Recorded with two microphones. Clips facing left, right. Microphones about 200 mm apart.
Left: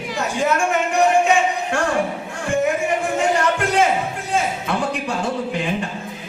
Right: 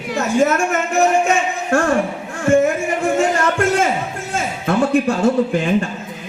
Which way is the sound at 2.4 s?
45° right (ahead or behind).